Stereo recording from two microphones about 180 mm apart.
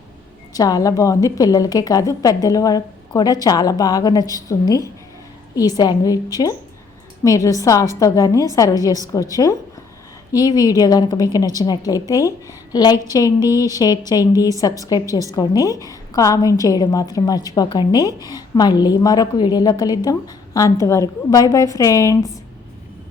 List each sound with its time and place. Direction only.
0.5 s a woman's voice: 20° left (ahead or behind)